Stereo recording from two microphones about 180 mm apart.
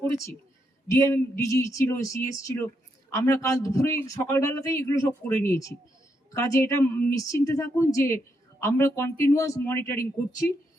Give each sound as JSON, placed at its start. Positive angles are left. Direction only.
{"t": 0.9, "sound": "speech", "side_deg": 15}